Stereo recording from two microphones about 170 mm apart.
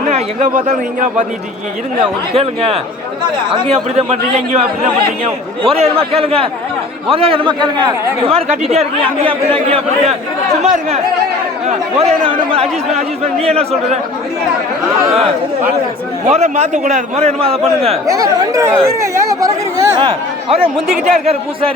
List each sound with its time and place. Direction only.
0.1 s speech: 45° right (ahead or behind)
2.3 s a man's voice: 35° right (ahead or behind)
5.7 s a man's voice: 35° right (ahead or behind)
16.2 s a man's voice: 40° right (ahead or behind)
18.1 s speech: 20° right (ahead or behind)
20.0 s a man's voice: 35° right (ahead or behind)